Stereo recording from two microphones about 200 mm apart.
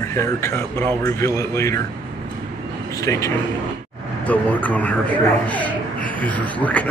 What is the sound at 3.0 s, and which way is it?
A man's voice, 15° left (ahead or behind).